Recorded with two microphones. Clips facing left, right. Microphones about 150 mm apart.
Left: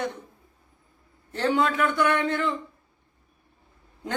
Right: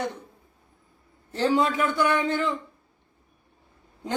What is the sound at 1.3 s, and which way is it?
Speech, 35° right (ahead or behind).